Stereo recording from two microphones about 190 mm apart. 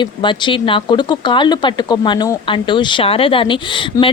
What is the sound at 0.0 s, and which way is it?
Speech, 25° left (ahead or behind).